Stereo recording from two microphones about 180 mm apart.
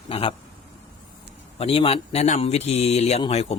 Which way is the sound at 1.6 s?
30° left (ahead or behind).